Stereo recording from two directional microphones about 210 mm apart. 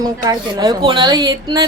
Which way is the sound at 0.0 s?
20° right (ahead or behind).